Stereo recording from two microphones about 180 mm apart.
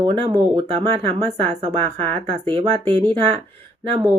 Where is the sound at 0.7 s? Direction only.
35° right (ahead or behind).